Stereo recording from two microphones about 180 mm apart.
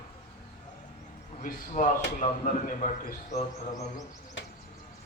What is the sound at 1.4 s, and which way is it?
A man's voice, 45° left (ahead or behind).